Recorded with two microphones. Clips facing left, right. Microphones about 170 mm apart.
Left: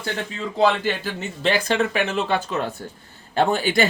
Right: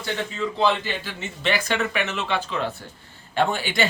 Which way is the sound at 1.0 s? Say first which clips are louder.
Left 4 dB; 35° left (ahead or behind).